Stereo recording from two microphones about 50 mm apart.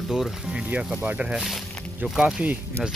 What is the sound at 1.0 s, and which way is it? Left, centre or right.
Speech, right.